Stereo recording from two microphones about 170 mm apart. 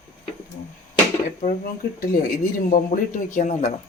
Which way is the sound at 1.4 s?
55° left (ahead or behind).